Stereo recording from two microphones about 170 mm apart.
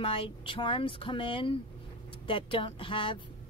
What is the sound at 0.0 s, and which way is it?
Speech, 30° left (ahead or behind).